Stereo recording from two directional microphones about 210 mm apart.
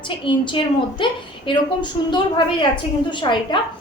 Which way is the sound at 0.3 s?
25° left (ahead or behind).